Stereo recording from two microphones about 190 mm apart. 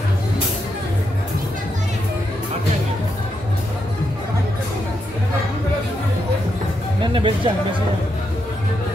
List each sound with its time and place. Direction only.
7.0 s music: 25° right (ahead or behind)